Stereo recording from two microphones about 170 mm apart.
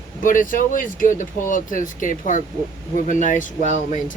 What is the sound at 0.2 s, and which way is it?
Speech, 50° left (ahead or behind).